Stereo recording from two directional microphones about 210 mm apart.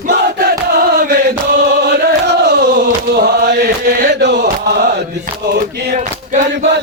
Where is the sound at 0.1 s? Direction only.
50° right (ahead or behind).